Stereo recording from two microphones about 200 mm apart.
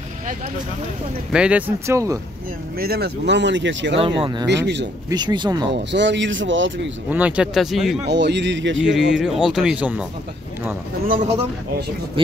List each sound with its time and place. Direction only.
1.3 s speech: 5° right (ahead or behind)
2.8 s speech: 50° right (ahead or behind)
4.0 s speech: 25° right (ahead or behind)
4.5 s speech: 60° right (ahead or behind)
5.1 s speech: 20° right (ahead or behind)
5.7 s speech: 60° right (ahead or behind)
7.1 s speech: 5° right (ahead or behind)
8.1 s speech: 60° right (ahead or behind)
8.8 s speech: centre (ahead or behind)